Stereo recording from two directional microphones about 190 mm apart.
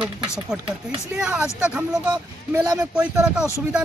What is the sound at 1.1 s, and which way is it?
Speech, 5° right (ahead or behind).